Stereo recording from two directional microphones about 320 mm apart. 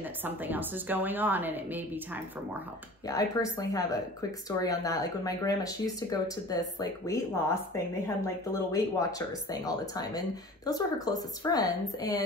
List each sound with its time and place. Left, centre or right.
0.2 s a woman's voice: centre
3.1 s speech: centre